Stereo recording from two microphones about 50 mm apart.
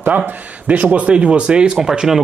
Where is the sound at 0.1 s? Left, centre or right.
Right.